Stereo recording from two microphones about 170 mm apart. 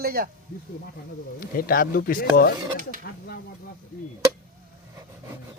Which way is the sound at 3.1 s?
85° left.